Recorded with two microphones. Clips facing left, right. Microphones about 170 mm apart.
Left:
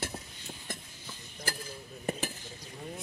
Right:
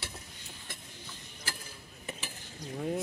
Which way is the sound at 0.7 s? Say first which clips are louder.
Left 7 dB; 45° left (ahead or behind).